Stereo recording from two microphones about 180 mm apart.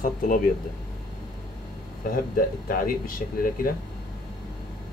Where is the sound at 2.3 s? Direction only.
50° left (ahead or behind).